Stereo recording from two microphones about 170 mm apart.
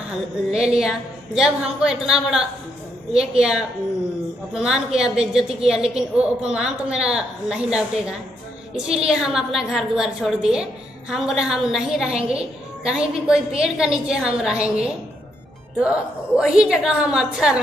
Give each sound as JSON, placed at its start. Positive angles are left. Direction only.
{"t": 0.5, "sound": "a woman's voice", "side_deg": -5}